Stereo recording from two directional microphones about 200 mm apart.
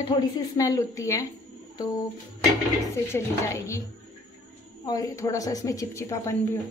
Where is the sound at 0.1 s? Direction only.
20° left (ahead or behind).